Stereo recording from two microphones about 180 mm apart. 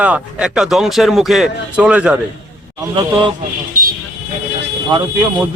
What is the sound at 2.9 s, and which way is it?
Speech, 30° right (ahead or behind).